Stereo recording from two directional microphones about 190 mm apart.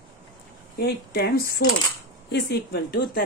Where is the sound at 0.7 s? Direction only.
55° left (ahead or behind).